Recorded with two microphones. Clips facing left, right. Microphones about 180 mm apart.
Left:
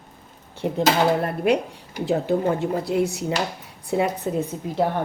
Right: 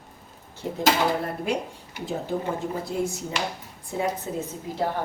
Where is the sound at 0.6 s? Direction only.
65° left (ahead or behind).